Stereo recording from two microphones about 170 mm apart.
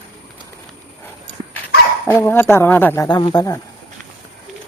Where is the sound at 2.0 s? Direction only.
10° left (ahead or behind).